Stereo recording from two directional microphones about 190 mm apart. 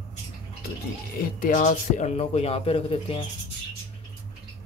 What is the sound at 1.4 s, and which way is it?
Speech, 40° left (ahead or behind).